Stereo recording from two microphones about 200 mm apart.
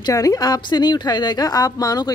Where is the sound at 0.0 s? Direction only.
15° left (ahead or behind).